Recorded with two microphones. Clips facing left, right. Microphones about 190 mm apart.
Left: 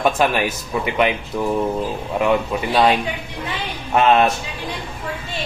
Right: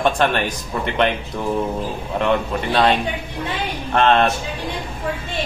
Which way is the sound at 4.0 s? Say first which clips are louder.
Left 1 dB; 10° left (ahead or behind).